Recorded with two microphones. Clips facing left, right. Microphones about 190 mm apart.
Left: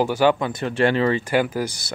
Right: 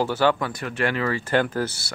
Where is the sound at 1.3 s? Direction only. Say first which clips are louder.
Left 1 dB; 10° left (ahead or behind).